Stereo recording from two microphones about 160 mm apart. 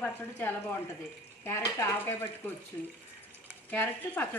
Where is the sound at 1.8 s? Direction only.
15° left (ahead or behind).